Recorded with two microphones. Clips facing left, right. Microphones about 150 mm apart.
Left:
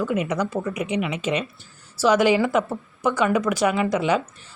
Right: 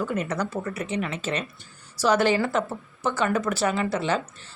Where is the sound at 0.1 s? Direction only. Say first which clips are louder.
Left 4 dB; 10° left (ahead or behind).